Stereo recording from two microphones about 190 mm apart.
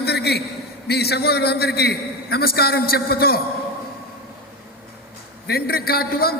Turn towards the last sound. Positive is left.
turn(degrees=50)  # may be behind; listen again after turning